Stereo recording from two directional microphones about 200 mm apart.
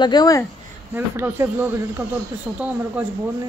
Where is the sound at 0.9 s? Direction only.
10° right (ahead or behind).